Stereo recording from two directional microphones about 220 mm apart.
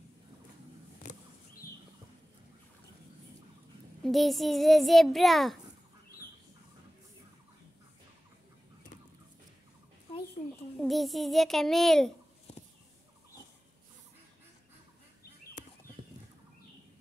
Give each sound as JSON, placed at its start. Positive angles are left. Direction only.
{"t": 1.0, "sound": "a sound", "side_deg": 35}
{"t": 4.0, "sound": "a child's voice", "side_deg": 0}
{"t": 10.8, "sound": "a child's voice", "side_deg": 0}
{"t": 12.5, "sound": "fowl", "side_deg": 30}